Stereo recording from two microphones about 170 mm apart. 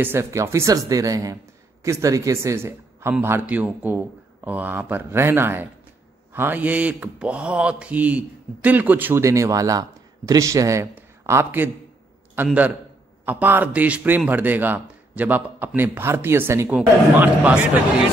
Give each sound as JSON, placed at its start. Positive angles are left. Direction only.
{"t": 0.0, "sound": "mantra", "side_deg": -15}
{"t": 13.2, "sound": "mantra", "side_deg": -10}